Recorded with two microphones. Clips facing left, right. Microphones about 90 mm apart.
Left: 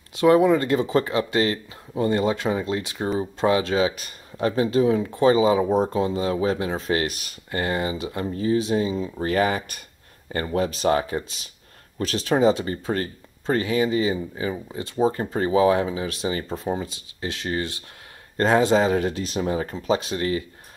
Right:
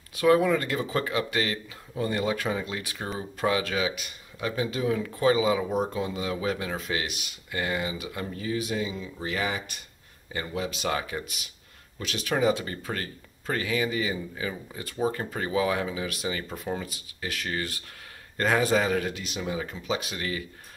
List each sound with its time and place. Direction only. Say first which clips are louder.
0.1 s speech: left 5 dB; 25° left (ahead or behind)